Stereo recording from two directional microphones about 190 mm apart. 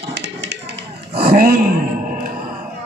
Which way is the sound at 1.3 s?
50° right (ahead or behind).